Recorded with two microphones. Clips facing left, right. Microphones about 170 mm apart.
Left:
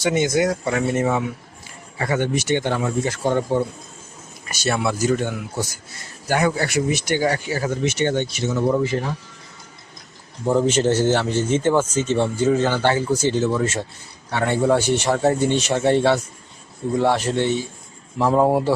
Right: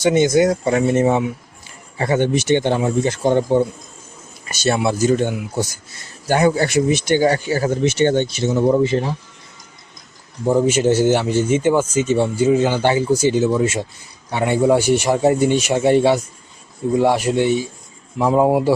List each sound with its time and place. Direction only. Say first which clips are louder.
0.0 s speech: right 5 dB; 25° right (ahead or behind)
10.4 s speech: right 3 dB; 10° right (ahead or behind)